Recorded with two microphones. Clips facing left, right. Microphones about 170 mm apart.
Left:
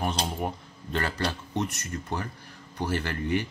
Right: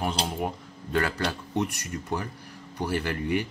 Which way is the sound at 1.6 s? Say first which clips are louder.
Right 2 dB; 15° right (ahead or behind).